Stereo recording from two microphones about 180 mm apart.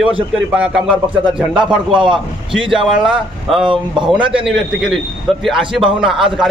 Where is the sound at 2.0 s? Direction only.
25° right (ahead or behind).